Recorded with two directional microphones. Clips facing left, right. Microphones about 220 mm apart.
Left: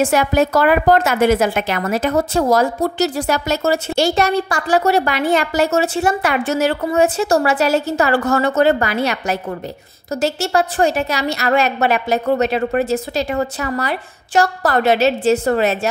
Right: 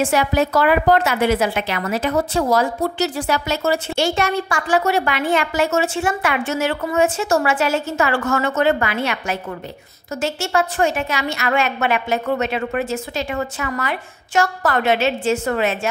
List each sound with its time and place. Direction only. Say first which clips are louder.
0.0 s a woman's voice: left 3 dB; 45° left (ahead or behind)